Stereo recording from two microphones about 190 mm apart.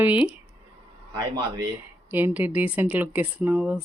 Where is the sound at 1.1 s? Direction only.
25° right (ahead or behind).